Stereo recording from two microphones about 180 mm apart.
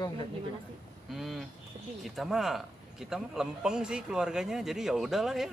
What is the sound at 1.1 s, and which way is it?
A man's voice, centre (ahead or behind).